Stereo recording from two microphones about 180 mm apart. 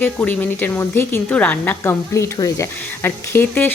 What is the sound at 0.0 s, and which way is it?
Speech, 10° left (ahead or behind).